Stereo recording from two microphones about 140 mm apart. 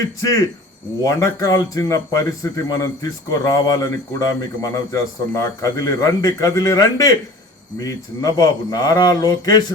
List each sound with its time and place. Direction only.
0.2 s a man's voice: 25° left (ahead or behind)